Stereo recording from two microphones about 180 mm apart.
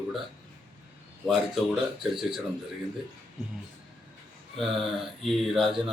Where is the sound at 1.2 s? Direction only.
Centre (ahead or behind).